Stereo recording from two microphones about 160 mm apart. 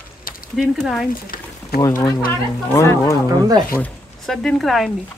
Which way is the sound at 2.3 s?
15° left (ahead or behind).